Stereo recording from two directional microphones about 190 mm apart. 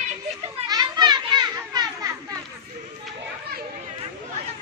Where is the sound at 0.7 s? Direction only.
20° right (ahead or behind).